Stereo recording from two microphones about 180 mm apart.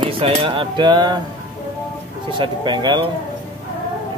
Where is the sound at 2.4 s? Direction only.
25° right (ahead or behind).